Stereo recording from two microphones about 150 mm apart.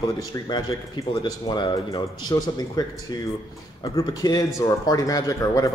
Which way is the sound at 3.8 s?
25° left (ahead or behind).